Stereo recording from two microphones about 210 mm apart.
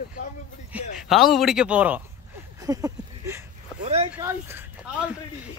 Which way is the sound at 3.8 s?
30° right (ahead or behind).